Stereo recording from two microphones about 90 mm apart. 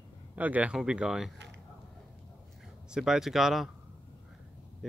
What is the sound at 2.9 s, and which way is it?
Speech, 5° right (ahead or behind).